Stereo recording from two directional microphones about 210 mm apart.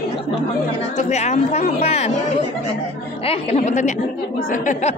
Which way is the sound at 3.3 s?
30° left (ahead or behind).